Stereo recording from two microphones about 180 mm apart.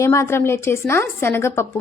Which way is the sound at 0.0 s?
15° left (ahead or behind).